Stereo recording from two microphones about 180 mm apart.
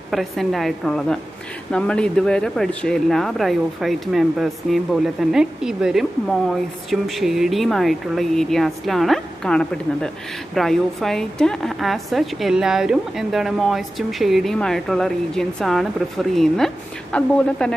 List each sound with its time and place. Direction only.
0.1 s speech: centre (ahead or behind)